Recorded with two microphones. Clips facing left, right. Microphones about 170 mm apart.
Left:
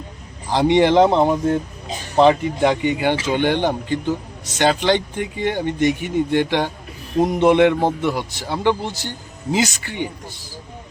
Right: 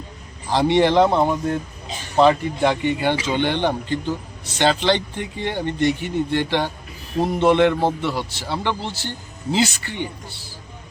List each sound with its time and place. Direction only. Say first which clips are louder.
0.5 s a man's voice: left 2 dB; 15° left (ahead or behind)